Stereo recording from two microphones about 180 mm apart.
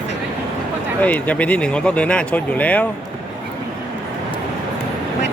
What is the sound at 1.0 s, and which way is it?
Speech, 10° left (ahead or behind).